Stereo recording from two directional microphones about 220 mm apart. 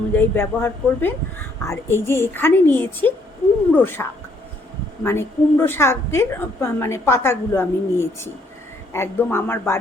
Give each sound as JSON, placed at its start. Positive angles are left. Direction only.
{"t": 0.1, "sound": "a woman's voice", "side_deg": 10}
{"t": 5.0, "sound": "a woman's voice", "side_deg": 10}